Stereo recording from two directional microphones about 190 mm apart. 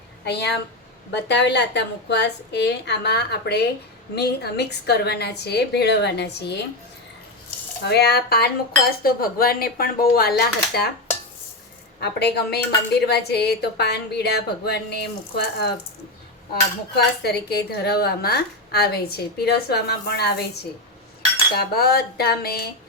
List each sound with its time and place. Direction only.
0.3 s a woman's voice: 60° left (ahead or behind)
7.9 s a woman's voice: 60° left (ahead or behind)
11.9 s a woman's voice: 60° left (ahead or behind)
17.2 s a woman's voice: 60° left (ahead or behind)
21.5 s a woman's voice: 55° left (ahead or behind)